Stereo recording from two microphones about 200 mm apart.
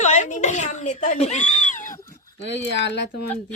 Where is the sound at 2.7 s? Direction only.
60° left (ahead or behind).